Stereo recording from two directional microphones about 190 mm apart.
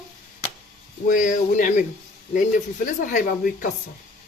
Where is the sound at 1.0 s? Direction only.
40° left (ahead or behind).